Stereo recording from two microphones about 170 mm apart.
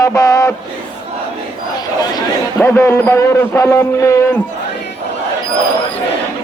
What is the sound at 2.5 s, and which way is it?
Music, 15° left (ahead or behind).